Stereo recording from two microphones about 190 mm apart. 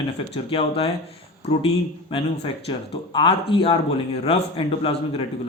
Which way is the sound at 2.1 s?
30° left (ahead or behind).